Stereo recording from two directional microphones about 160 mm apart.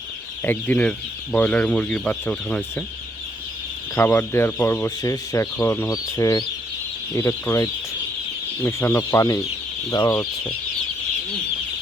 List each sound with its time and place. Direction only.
0.4 s speech: 10° left (ahead or behind)
3.9 s speech: 15° left (ahead or behind)